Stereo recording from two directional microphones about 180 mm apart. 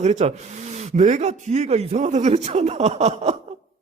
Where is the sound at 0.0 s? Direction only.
40° right (ahead or behind).